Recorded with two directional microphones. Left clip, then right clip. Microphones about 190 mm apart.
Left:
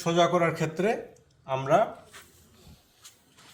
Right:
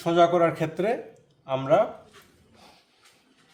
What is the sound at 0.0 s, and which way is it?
A man's voice, 30° right (ahead or behind).